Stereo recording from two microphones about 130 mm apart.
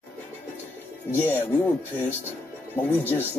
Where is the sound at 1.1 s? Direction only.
15° left (ahead or behind).